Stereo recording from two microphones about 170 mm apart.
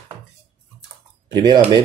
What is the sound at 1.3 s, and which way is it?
Speech, 25° right (ahead or behind).